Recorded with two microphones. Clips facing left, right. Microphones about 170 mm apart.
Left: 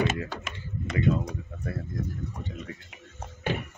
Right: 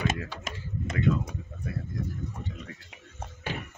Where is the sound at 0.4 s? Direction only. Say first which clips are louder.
Right 1 dB; 40° right (ahead or behind).